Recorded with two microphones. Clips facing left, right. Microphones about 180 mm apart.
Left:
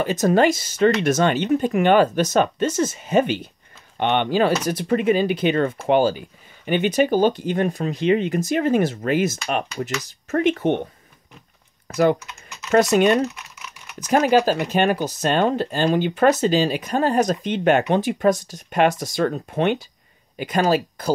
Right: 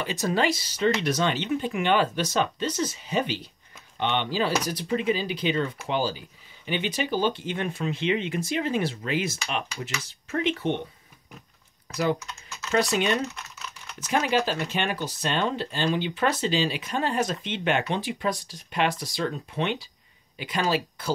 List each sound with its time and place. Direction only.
0.0 s speech: 45° left (ahead or behind)
11.9 s speech: 55° left (ahead or behind)